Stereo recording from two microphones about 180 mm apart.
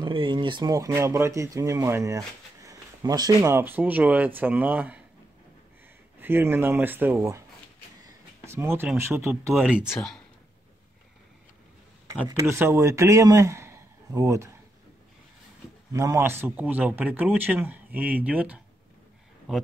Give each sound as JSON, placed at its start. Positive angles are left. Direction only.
{"t": 0.0, "sound": "speech", "side_deg": -25}
{"t": 6.1, "sound": "speech", "side_deg": -10}
{"t": 8.5, "sound": "speech", "side_deg": -10}
{"t": 9.8, "sound": "speech", "side_deg": 5}
{"t": 12.3, "sound": "a man's voice", "side_deg": -15}
{"t": 15.9, "sound": "speech", "side_deg": -20}